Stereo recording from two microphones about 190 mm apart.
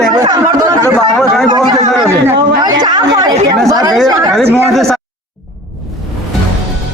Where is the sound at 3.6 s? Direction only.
20° right (ahead or behind).